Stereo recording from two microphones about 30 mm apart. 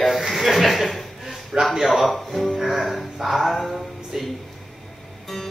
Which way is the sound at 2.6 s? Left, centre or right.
Centre.